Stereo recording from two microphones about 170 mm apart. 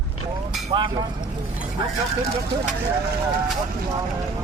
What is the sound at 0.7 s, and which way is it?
Speech, 25° right (ahead or behind).